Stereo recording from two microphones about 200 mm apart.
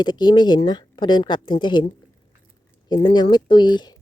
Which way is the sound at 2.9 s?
20° left (ahead or behind).